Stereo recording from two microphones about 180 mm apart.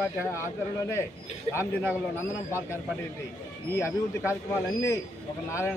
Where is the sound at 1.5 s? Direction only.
15° left (ahead or behind).